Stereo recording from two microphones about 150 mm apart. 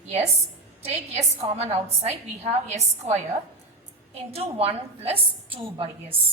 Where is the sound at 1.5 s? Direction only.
45° right (ahead or behind).